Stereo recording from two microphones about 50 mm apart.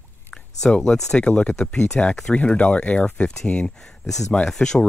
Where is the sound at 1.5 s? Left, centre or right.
Centre.